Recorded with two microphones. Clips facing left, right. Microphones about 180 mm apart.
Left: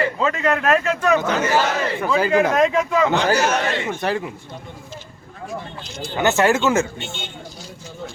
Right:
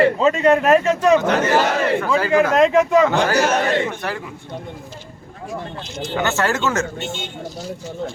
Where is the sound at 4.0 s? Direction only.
25° left (ahead or behind).